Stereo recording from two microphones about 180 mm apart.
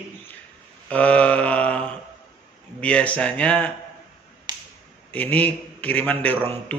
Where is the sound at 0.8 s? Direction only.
5° left (ahead or behind).